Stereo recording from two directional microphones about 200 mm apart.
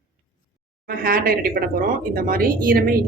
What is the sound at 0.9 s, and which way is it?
Speech, 45° right (ahead or behind).